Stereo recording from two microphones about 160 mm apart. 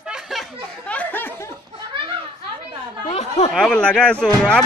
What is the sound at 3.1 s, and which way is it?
Speech, 45° left (ahead or behind).